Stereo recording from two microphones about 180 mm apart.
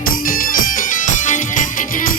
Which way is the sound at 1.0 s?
45° left (ahead or behind).